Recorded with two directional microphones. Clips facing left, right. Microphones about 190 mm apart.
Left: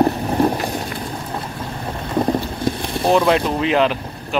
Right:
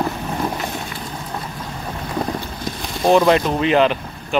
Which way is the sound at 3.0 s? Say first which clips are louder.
Right 2 dB; centre (ahead or behind).